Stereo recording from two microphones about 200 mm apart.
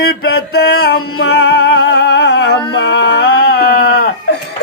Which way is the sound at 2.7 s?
60° left (ahead or behind).